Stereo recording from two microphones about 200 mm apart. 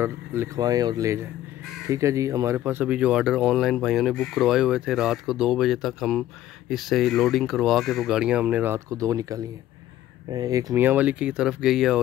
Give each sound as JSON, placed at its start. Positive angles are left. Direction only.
{"t": 0.0, "sound": "speech", "side_deg": -10}